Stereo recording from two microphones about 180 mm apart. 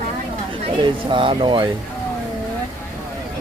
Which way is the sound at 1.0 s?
30° right (ahead or behind).